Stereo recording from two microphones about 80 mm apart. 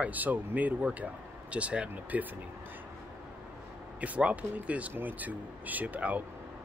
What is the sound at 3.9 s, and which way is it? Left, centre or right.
Speech, centre.